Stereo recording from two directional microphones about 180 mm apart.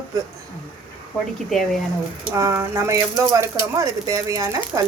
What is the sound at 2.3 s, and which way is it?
Speech, 15° right (ahead or behind).